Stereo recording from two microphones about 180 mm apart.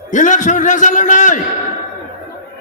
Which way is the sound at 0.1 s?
45° left (ahead or behind).